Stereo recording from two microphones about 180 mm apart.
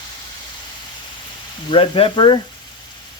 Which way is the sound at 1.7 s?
30° left (ahead or behind).